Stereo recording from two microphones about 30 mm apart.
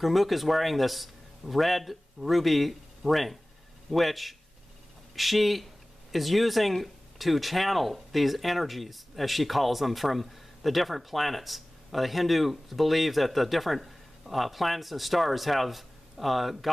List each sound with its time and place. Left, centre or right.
0.0 s speech: centre